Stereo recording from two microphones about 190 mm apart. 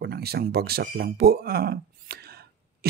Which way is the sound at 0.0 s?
55° right (ahead or behind).